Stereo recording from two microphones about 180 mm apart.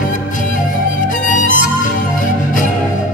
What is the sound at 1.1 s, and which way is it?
Music, 45° left (ahead or behind).